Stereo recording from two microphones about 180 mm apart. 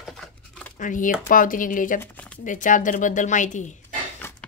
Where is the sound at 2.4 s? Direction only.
45° left (ahead or behind).